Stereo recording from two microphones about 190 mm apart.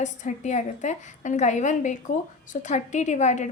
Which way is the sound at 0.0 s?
40° left (ahead or behind).